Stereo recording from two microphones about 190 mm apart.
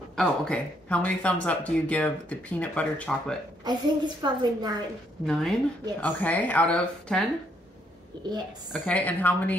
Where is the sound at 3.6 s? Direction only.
25° right (ahead or behind).